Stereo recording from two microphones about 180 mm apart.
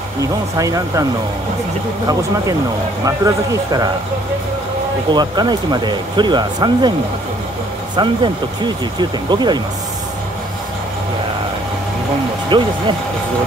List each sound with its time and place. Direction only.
0.2 s speech: 20° right (ahead or behind)
3.1 s speech: 20° right (ahead or behind)
5.1 s speech: 25° right (ahead or behind)
7.9 s speech: 25° right (ahead or behind)
12.4 s speech: 25° right (ahead or behind)